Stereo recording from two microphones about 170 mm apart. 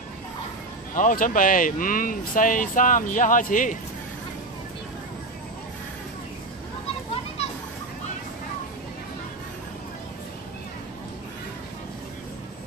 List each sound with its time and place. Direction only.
0.9 s speech: 50° left (ahead or behind)